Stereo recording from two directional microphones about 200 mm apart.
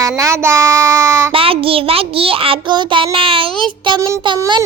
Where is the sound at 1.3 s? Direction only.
25° right (ahead or behind).